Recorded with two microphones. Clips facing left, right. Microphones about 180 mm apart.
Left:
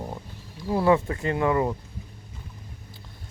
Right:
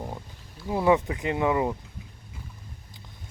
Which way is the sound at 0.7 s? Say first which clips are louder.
Left 1 dB; 15° right (ahead or behind).